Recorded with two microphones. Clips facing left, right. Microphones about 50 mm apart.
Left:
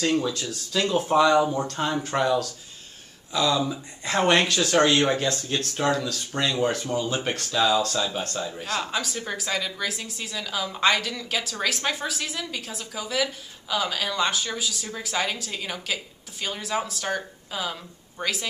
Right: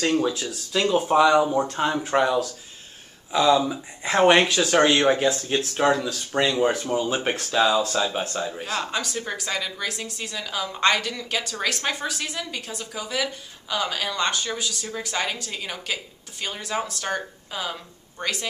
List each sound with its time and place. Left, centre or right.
0.0 s speech: right
0.3 s speech: centre